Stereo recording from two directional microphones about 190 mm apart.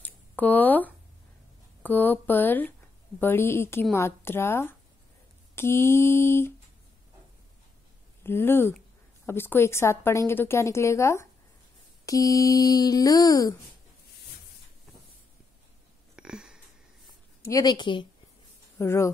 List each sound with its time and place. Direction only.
0.0 s a sound: 10° left (ahead or behind)
1.8 s a woman's voice: 10° left (ahead or behind)
8.2 s a woman's voice: 10° left (ahead or behind)
16.2 s a sound: 5° right (ahead or behind)
17.4 s speech: 15° left (ahead or behind)
18.8 s a woman's voice: 15° left (ahead or behind)